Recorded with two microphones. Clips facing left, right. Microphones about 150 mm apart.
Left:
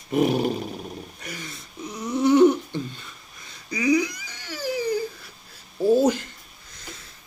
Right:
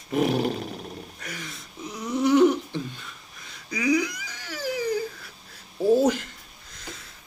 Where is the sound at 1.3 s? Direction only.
Centre (ahead or behind).